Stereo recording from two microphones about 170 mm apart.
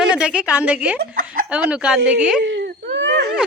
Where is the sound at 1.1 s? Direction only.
55° right (ahead or behind).